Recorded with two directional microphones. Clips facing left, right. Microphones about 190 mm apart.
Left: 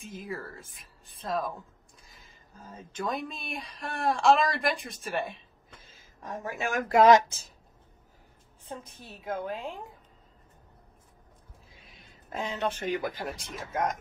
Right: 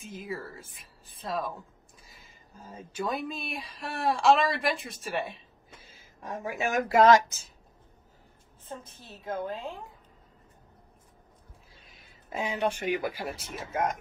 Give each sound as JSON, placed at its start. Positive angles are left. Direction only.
{"t": 0.0, "sound": "speech", "side_deg": 0}
{"t": 2.9, "sound": "speech", "side_deg": -5}
{"t": 7.2, "sound": "speech", "side_deg": 35}
{"t": 8.6, "sound": "a woman's voice", "side_deg": 15}
{"t": 11.9, "sound": "speech", "side_deg": -10}